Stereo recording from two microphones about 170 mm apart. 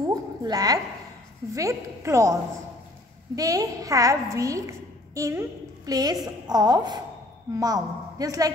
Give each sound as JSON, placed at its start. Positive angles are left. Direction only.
{"t": 0.0, "sound": "a sound", "side_deg": -20}
{"t": 1.5, "sound": "a woman's voice", "side_deg": -20}
{"t": 3.3, "sound": "a woman's voice", "side_deg": -20}